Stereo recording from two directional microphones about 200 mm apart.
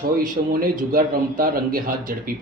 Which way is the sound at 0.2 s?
45° right (ahead or behind).